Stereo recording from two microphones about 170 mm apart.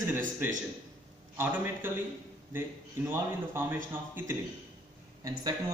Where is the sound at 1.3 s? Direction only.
10° right (ahead or behind).